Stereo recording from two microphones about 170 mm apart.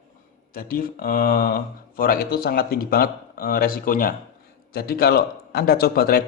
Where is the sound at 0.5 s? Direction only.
55° left (ahead or behind).